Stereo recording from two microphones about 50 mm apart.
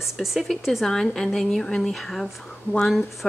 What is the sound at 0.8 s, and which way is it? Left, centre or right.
A woman's voice, centre.